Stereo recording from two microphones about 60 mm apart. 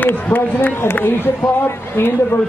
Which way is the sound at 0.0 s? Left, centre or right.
Left.